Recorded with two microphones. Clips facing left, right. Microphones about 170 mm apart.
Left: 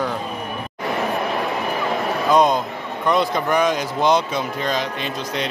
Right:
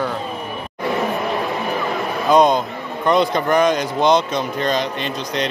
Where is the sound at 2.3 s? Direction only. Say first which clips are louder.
Right 3 dB; centre (ahead or behind).